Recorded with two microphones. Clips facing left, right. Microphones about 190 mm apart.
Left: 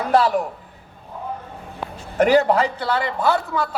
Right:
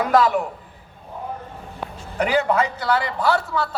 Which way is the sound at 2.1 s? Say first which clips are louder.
Left 4 dB; 40° left (ahead or behind).